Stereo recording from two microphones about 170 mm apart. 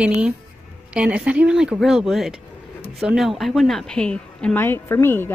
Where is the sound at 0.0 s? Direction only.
5° right (ahead or behind).